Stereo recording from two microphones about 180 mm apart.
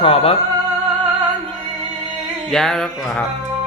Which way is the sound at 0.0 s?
30° left (ahead or behind).